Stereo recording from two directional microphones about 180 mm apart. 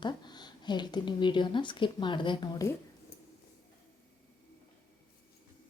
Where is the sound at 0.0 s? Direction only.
25° left (ahead or behind).